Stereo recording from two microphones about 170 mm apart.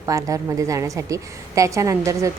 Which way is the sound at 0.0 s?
20° right (ahead or behind).